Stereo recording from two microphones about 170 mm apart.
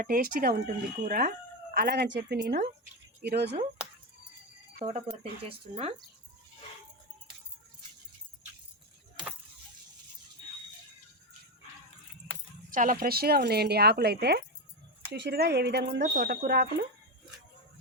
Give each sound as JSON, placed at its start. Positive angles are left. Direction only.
{"t": 0.0, "sound": "speech", "side_deg": -60}
{"t": 1.7, "sound": "speech", "side_deg": -70}
{"t": 4.9, "sound": "speech", "side_deg": -35}
{"t": 12.7, "sound": "speech", "side_deg": -55}
{"t": 15.1, "sound": "speech", "side_deg": -85}
{"t": 16.0, "sound": "speech", "side_deg": -60}